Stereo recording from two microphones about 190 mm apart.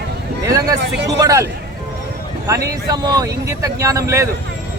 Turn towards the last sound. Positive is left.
turn(degrees=-15)  # may be behind; listen again after turning